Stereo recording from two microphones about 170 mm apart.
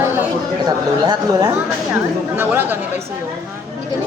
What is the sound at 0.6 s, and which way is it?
Speech, 25° right (ahead or behind).